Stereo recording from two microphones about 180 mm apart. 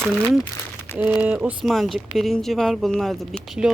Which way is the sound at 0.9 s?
10° right (ahead or behind).